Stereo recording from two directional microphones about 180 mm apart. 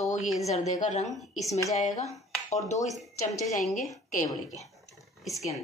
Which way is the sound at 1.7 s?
40° left (ahead or behind).